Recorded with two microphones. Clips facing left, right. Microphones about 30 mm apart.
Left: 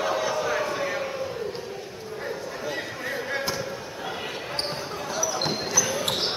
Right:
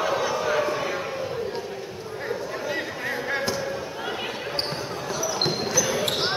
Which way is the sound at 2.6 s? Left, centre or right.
Centre.